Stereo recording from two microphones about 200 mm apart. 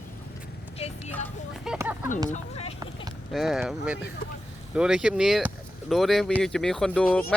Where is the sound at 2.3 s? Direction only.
30° left (ahead or behind).